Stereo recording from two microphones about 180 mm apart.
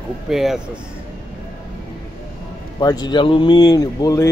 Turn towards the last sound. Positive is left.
turn(degrees=20)  # may be behind; listen again after turning